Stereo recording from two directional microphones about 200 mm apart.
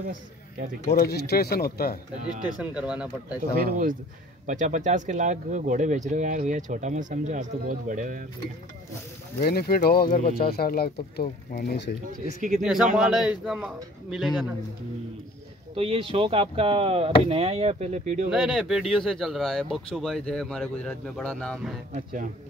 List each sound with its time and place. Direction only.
0.9 s speech: 55° left (ahead or behind)
2.4 s speech: 5° right (ahead or behind)
3.6 s speech: 45° right (ahead or behind)
9.4 s speech: 50° left (ahead or behind)
12.1 s speech: 40° right (ahead or behind)
12.9 s speech: 5° right (ahead or behind)
15.7 s speech: 30° right (ahead or behind)
18.3 s speech: 5° right (ahead or behind)
21.9 s speech: 40° right (ahead or behind)